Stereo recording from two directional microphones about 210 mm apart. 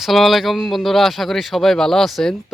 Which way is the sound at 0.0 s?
Centre (ahead or behind).